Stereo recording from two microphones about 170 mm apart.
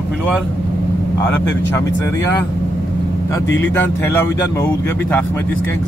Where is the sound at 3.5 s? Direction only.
10° left (ahead or behind).